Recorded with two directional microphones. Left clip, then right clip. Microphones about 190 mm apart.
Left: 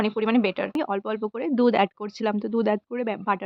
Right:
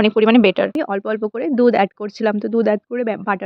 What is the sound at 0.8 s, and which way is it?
Speech, 20° right (ahead or behind).